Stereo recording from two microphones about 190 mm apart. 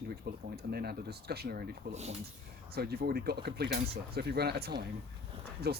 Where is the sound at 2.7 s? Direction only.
55° right (ahead or behind).